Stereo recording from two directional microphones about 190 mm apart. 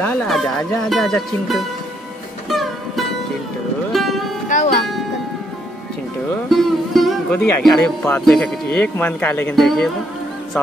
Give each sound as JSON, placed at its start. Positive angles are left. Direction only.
{"t": 0.0, "sound": "speech", "side_deg": 10}
{"t": 3.9, "sound": "music", "side_deg": 0}
{"t": 4.5, "sound": "music", "side_deg": 40}
{"t": 6.3, "sound": "speech", "side_deg": 0}